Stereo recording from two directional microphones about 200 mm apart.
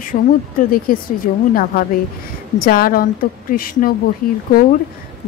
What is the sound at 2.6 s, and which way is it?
A woman's voice, 45° left (ahead or behind).